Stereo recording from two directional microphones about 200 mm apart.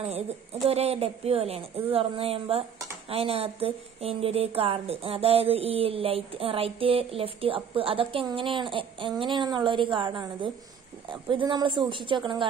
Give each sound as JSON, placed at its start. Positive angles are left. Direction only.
{"t": 0.7, "sound": "speech", "side_deg": -30}